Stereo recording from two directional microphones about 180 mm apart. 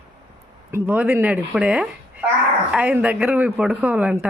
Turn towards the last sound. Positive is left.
turn(degrees=-5)  # may be behind; listen again after turning